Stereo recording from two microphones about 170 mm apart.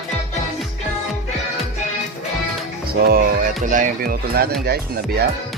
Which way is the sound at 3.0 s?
60° right (ahead or behind).